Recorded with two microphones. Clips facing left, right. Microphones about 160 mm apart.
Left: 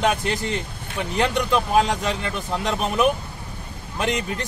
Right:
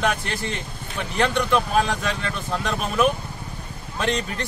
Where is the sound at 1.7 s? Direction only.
15° left (ahead or behind).